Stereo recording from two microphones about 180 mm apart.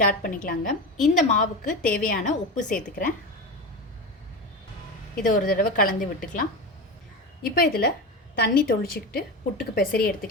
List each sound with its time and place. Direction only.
0.0 s a woman's voice: 50° left (ahead or behind)
5.1 s a woman's voice: 50° left (ahead or behind)
7.4 s a woman's voice: 55° left (ahead or behind)